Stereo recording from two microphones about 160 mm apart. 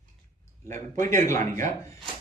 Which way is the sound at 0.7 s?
15° left (ahead or behind).